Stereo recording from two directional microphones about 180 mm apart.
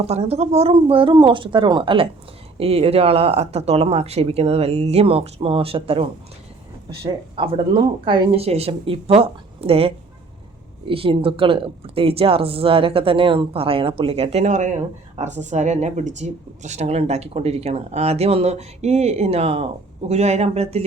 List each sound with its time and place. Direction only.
0.0 s speech: 35° right (ahead or behind)